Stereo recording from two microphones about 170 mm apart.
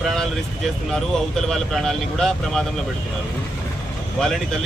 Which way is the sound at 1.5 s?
Centre (ahead or behind).